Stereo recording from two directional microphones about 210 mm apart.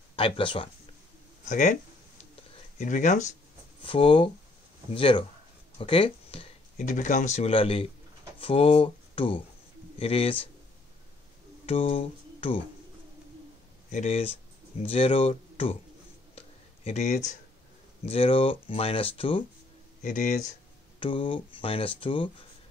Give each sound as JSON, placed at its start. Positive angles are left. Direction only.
{"t": 0.1, "sound": "speech", "side_deg": 25}
{"t": 1.5, "sound": "speech", "side_deg": 35}
{"t": 2.8, "sound": "speech", "side_deg": 35}
{"t": 3.8, "sound": "speech", "side_deg": 25}
{"t": 11.6, "sound": "speech", "side_deg": 25}
{"t": 13.8, "sound": "speech", "side_deg": 35}
{"t": 16.3, "sound": "a sound", "side_deg": 30}
{"t": 18.0, "sound": "speech", "side_deg": 25}
{"t": 20.0, "sound": "speech", "side_deg": 35}
{"t": 21.0, "sound": "speech", "side_deg": 25}